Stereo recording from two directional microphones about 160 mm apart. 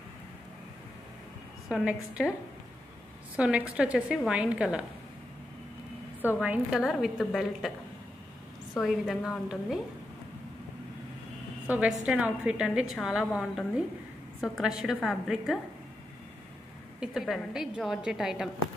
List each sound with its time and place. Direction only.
1.7 s a woman's voice: 5° right (ahead or behind)
3.3 s a woman's voice: 10° right (ahead or behind)
6.2 s a woman's voice: 10° right (ahead or behind)
8.8 s a woman's voice: centre (ahead or behind)
11.6 s a woman's voice: 10° right (ahead or behind)
17.0 s a woman's voice: centre (ahead or behind)